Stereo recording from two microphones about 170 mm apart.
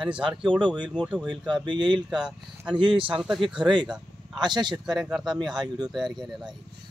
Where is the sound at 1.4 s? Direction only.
25° right (ahead or behind).